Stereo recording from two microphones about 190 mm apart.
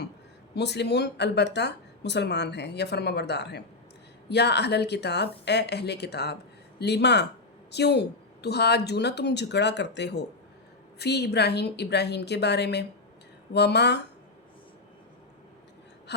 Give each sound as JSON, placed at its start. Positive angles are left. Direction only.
{"t": 0.5, "sound": "speech", "side_deg": 60}